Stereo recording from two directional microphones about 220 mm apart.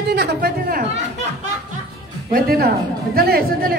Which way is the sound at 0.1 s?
50° right (ahead or behind).